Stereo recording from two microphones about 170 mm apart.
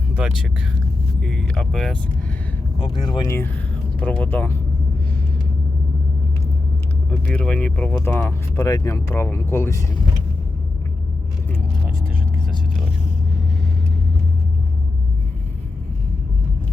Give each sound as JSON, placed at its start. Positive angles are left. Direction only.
{"t": 0.2, "sound": "speech", "side_deg": -5}
{"t": 2.8, "sound": "speech", "side_deg": 25}
{"t": 7.3, "sound": "speech", "side_deg": 5}